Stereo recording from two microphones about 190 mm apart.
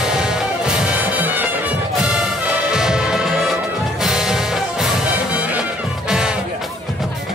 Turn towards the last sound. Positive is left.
turn(degrees=-5)  # may be behind; listen again after turning